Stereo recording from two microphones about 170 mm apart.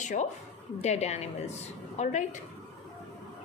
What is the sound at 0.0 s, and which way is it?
A woman's voice, 45° left (ahead or behind).